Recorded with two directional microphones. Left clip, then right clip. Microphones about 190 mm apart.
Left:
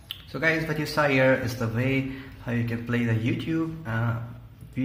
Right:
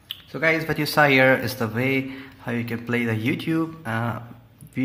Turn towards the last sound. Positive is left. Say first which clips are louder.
# right 4 dB
turn(degrees=-40)  # may be behind; listen again after turning